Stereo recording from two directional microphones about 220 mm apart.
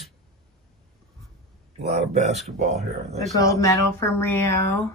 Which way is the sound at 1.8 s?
30° right (ahead or behind).